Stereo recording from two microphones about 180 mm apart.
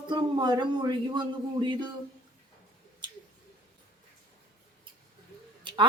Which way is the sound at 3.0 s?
25° right (ahead or behind).